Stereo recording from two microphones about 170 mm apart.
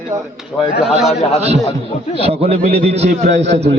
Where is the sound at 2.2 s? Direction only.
35° right (ahead or behind).